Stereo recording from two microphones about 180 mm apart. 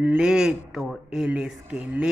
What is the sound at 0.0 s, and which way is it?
Speech, 5° right (ahead or behind).